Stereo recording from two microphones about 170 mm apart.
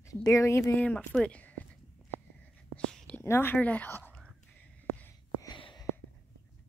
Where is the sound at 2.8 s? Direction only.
5° left (ahead or behind).